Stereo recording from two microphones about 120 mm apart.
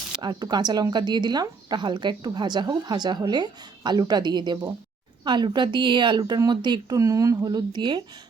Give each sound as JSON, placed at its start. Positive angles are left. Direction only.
{"t": 0.2, "sound": "speech", "side_deg": -35}